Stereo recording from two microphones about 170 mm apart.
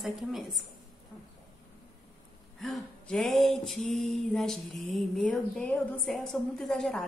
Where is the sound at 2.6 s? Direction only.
Centre (ahead or behind).